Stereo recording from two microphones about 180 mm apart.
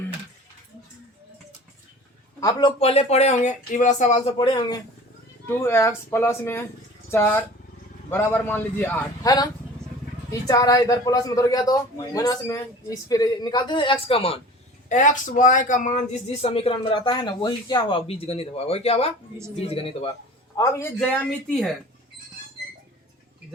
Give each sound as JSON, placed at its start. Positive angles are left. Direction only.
{"t": 2.4, "sound": "speech", "side_deg": 20}
{"t": 5.5, "sound": "a man's voice", "side_deg": 15}
{"t": 10.4, "sound": "a man's voice", "side_deg": 20}
{"t": 14.8, "sound": "speech", "side_deg": 45}
{"t": 20.6, "sound": "a man's voice", "side_deg": 15}